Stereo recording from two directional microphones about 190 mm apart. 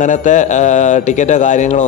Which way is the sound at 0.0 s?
40° left (ahead or behind).